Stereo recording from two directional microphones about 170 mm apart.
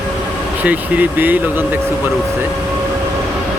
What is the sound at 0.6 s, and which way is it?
Speech, 10° right (ahead or behind).